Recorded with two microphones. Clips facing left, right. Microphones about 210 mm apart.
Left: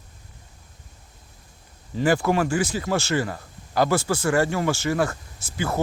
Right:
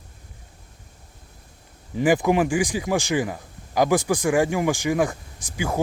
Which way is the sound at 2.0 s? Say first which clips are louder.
Right 2 dB; 15° right (ahead or behind).